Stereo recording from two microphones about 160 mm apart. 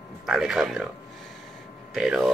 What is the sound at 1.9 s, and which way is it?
Speech, 5° right (ahead or behind).